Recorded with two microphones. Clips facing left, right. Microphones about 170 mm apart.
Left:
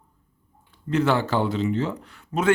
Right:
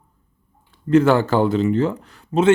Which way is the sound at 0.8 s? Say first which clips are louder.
Right 7 dB; 50° right (ahead or behind).